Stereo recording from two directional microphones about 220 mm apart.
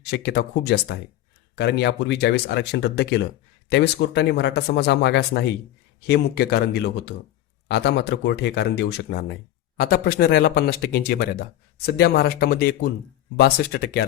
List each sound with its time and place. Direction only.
0.0 s speech: 50° left (ahead or behind)